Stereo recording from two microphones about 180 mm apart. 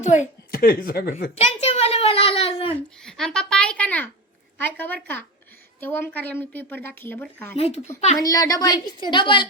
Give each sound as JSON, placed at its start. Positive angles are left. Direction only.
{"t": 0.0, "sound": "speech", "side_deg": 45}
{"t": 1.4, "sound": "a sound", "side_deg": 40}
{"t": 3.0, "sound": "a child's voice", "side_deg": 0}
{"t": 7.5, "sound": "speech", "side_deg": 35}
{"t": 8.2, "sound": "a woman's voice", "side_deg": 20}